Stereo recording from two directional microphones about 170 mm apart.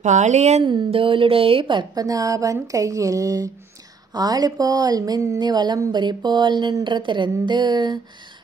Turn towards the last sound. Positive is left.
turn(degrees=-25)  # may be behind; listen again after turning